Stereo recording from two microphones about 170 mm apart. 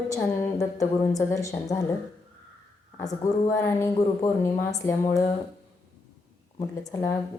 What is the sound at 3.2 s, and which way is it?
A woman's voice, 15° left (ahead or behind).